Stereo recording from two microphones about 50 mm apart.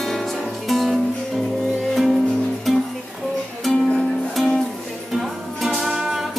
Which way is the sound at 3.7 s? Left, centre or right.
Centre.